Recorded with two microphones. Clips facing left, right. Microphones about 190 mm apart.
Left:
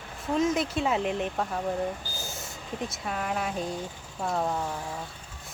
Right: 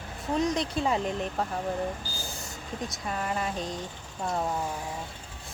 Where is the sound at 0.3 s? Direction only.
5° left (ahead or behind).